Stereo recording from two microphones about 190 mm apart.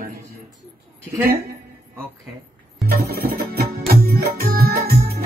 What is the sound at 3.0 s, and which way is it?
Music, 55° right (ahead or behind).